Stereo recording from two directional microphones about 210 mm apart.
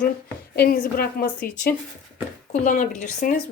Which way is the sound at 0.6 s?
45° left (ahead or behind).